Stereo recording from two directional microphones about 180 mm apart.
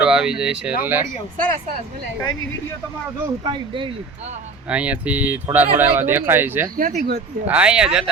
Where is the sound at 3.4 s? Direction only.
25° right (ahead or behind).